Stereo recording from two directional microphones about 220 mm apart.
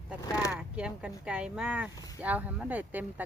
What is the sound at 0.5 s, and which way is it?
Speech, 5° right (ahead or behind).